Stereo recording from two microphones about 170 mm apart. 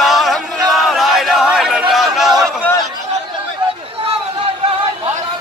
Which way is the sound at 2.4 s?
10° left (ahead or behind).